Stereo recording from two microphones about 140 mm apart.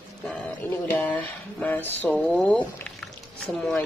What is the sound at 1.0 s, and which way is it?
Speech, 10° left (ahead or behind).